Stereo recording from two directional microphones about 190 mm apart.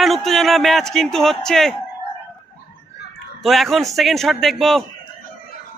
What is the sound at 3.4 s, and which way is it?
Speech, centre (ahead or behind).